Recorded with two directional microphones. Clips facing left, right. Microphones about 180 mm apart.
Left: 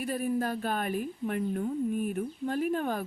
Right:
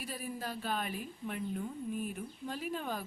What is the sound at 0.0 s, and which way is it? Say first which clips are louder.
Speech: left 11 dB; 55° left (ahead or behind).